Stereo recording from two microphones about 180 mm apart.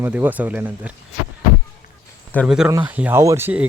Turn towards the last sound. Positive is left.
turn(degrees=-10)  # may be behind; listen again after turning